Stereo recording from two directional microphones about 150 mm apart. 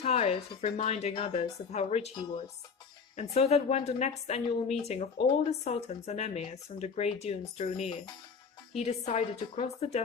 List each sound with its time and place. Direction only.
0.0 s a woman's voice: 45° left (ahead or behind)
3.2 s a woman's voice: 45° left (ahead or behind)
8.7 s a woman's voice: 45° left (ahead or behind)